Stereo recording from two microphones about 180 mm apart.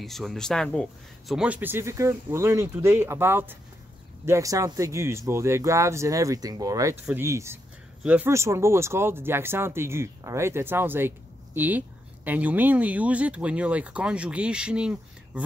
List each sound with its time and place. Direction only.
0.0 s speech: centre (ahead or behind)